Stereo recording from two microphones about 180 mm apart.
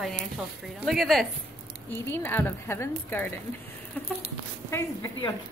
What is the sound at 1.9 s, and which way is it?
A woman's voice, 10° left (ahead or behind).